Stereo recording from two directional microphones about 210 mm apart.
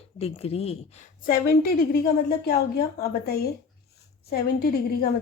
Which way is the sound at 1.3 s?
45° left (ahead or behind).